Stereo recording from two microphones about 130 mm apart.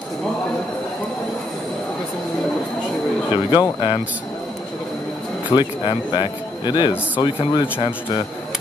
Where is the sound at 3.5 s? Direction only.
40° left (ahead or behind).